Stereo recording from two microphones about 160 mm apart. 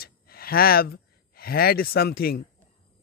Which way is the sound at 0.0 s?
70° left (ahead or behind).